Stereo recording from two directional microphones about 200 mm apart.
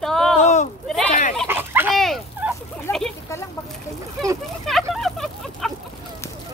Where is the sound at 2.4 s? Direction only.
5° right (ahead or behind).